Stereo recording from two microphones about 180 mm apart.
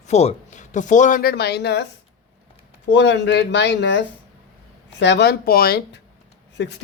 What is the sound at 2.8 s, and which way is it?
Speech, 75° left (ahead or behind).